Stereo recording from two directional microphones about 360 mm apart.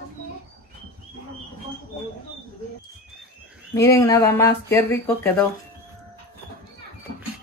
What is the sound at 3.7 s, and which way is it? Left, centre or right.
Speech, centre.